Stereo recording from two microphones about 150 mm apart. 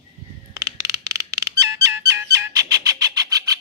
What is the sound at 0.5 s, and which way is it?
Music, 20° right (ahead or behind).